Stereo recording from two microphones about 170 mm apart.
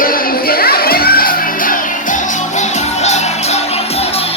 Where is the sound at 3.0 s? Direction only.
40° left (ahead or behind).